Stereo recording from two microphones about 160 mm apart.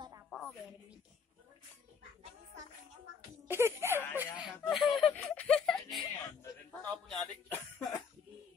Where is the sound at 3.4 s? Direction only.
15° right (ahead or behind).